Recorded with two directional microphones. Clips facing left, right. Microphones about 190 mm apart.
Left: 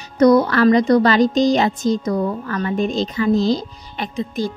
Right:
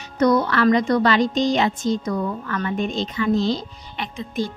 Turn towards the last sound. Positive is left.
turn(degrees=40)  # may be behind; listen again after turning